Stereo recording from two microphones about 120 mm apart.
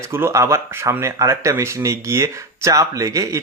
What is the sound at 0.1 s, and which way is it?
Speech, 20° right (ahead or behind).